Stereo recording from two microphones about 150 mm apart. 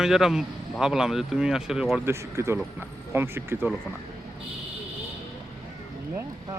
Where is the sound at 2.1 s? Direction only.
20° right (ahead or behind).